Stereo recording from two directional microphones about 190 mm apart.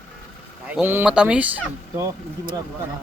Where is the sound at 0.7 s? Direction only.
10° right (ahead or behind).